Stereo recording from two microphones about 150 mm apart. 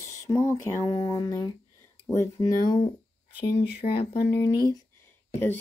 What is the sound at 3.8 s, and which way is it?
Speech, 90° left.